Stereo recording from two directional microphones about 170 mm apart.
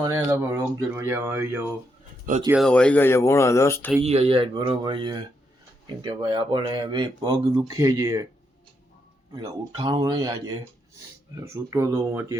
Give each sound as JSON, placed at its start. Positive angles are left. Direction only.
{"t": 0.0, "sound": "speech", "side_deg": -15}
{"t": 2.6, "sound": "speech", "side_deg": 5}
{"t": 4.0, "sound": "speech", "side_deg": -35}
{"t": 9.3, "sound": "speech", "side_deg": -25}